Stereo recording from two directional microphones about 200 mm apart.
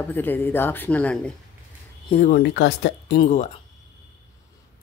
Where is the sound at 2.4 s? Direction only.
60° left (ahead or behind).